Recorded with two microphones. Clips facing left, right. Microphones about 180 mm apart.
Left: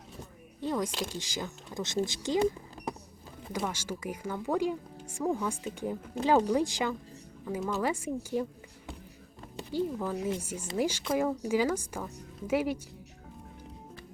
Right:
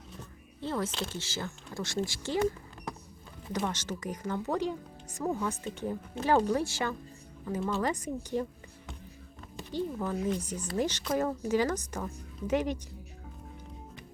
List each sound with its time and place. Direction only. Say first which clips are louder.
0.6 s speech: left 2 dB; 15° left (ahead or behind)
3.7 s speech: even; 10° left (ahead or behind)
9.7 s speech: left 1 dB; 5° left (ahead or behind)